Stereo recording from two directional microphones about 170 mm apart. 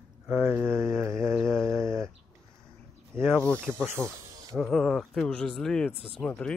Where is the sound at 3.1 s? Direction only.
10° right (ahead or behind).